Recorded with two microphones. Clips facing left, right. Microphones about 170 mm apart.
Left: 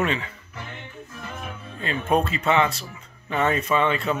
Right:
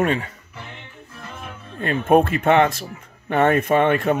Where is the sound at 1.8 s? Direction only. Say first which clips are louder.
Right 6 dB; 50° right (ahead or behind).